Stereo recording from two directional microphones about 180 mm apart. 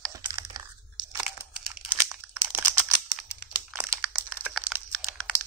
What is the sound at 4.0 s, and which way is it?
Crumpling, centre (ahead or behind).